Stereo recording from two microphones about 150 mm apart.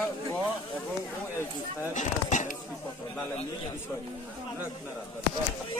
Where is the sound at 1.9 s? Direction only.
55° left (ahead or behind).